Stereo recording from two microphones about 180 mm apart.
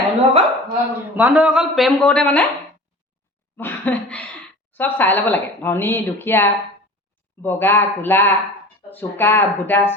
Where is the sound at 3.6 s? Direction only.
10° left (ahead or behind).